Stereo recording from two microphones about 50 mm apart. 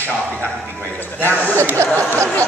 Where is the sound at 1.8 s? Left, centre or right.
Right.